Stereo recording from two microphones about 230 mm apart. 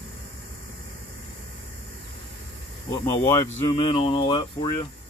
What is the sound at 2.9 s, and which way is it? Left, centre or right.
Speech, centre.